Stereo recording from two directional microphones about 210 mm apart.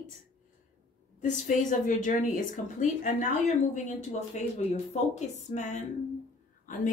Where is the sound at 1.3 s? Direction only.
35° left (ahead or behind).